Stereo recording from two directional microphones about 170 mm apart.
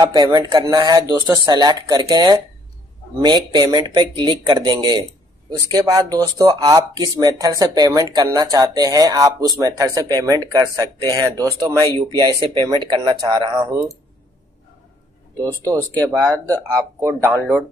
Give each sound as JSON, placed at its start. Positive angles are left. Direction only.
{"t": 0.0, "sound": "speech", "side_deg": -25}
{"t": 15.6, "sound": "speech", "side_deg": -20}